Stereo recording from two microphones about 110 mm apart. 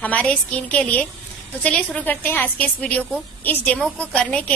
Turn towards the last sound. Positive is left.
turn(degrees=10)  # may be behind; listen again after turning